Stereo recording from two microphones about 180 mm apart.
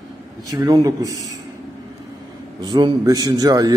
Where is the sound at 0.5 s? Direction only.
20° right (ahead or behind).